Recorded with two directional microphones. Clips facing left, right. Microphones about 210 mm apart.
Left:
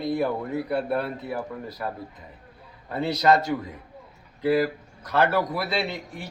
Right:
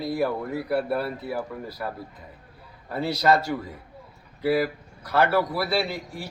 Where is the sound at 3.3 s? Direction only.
20° left (ahead or behind).